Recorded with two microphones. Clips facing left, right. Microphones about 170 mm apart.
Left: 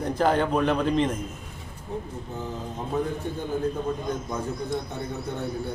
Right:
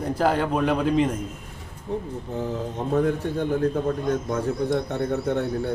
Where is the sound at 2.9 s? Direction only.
70° right (ahead or behind).